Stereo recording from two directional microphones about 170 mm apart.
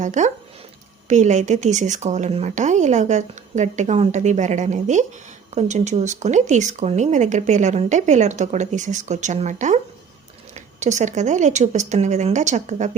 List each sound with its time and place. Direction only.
0.0 s speech: 45° right (ahead or behind)